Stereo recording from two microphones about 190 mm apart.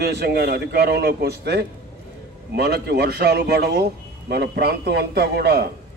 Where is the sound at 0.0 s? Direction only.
60° right (ahead or behind).